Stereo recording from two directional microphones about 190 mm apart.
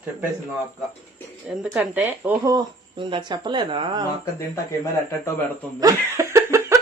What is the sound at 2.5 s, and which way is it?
Speech, 25° right (ahead or behind).